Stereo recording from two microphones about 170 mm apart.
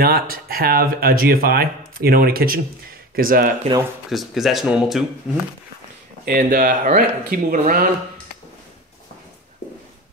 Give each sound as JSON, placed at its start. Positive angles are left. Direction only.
{"t": 0.0, "sound": "speech", "side_deg": -60}
{"t": 4.1, "sound": "speech", "side_deg": 0}
{"t": 6.2, "sound": "speech", "side_deg": -60}